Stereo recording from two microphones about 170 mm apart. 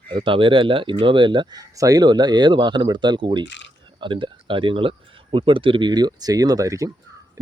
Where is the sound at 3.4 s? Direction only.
90° left.